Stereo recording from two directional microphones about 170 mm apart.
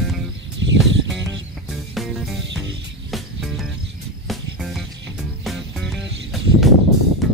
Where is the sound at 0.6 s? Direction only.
90° right.